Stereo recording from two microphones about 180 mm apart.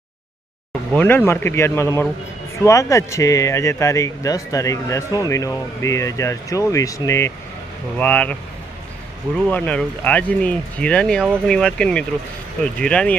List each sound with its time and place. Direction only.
0.9 s speech: 10° left (ahead or behind)
9.5 s speech: 10° left (ahead or behind)